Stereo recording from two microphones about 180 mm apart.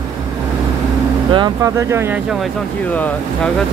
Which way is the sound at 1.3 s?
25° right (ahead or behind).